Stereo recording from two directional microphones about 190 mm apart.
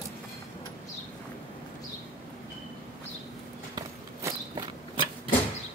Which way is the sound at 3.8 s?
20° right (ahead or behind).